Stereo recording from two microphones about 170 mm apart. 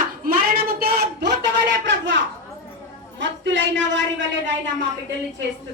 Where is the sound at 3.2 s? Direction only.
90° right.